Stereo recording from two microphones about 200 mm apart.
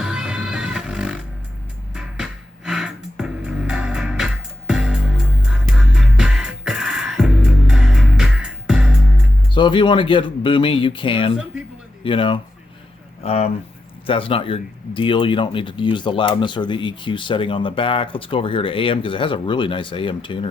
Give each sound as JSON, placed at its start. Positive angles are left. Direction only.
{"t": 0.0, "sound": "music", "side_deg": -5}
{"t": 9.6, "sound": "speech", "side_deg": 25}